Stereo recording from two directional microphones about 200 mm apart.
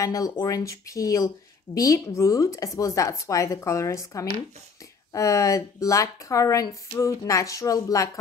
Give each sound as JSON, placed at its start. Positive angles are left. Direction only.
{"t": 0.0, "sound": "speech", "side_deg": 15}